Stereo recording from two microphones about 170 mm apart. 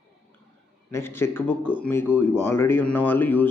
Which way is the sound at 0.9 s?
15° left (ahead or behind).